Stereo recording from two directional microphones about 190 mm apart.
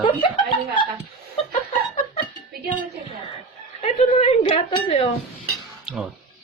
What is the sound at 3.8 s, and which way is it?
A woman's voice, 35° left (ahead or behind).